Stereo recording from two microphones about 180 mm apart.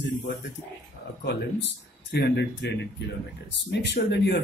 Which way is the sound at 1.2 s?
70° left (ahead or behind).